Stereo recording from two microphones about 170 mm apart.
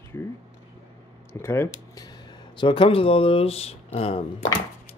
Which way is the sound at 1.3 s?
15° left (ahead or behind).